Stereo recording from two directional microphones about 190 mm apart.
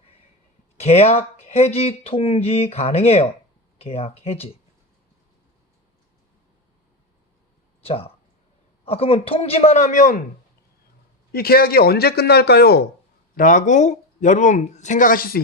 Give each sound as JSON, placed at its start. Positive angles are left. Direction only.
{"t": 0.8, "sound": "speech", "side_deg": 35}
{"t": 7.8, "sound": "speech", "side_deg": 30}
{"t": 11.3, "sound": "speech", "side_deg": 55}
{"t": 13.3, "sound": "speech", "side_deg": 45}